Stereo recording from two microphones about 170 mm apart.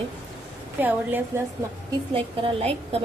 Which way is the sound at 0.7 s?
10° right (ahead or behind).